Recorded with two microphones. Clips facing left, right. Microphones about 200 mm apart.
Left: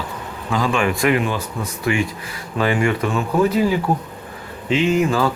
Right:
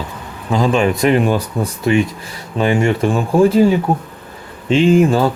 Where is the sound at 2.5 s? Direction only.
25° right (ahead or behind).